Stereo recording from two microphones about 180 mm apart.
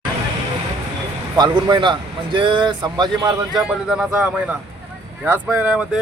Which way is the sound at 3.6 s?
Centre (ahead or behind).